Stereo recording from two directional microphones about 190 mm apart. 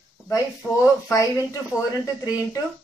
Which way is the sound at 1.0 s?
20° left (ahead or behind).